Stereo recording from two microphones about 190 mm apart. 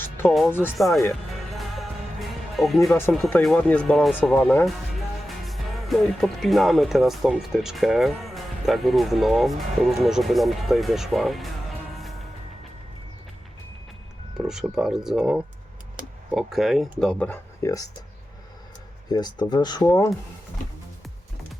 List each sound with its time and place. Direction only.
0.3 s speech: centre (ahead or behind)
1.5 s music: centre (ahead or behind)
2.6 s speech: centre (ahead or behind)
14.3 s speech: centre (ahead or behind); by 17.8 s 15° left (ahead or behind)
19.0 s speech: 20° left (ahead or behind)